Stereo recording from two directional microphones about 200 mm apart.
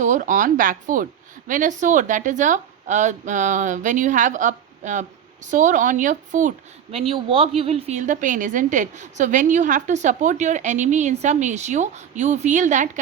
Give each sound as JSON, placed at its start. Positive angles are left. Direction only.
{"t": 0.0, "sound": "a woman's voice", "side_deg": -40}
{"t": 6.9, "sound": "a woman's voice", "side_deg": -30}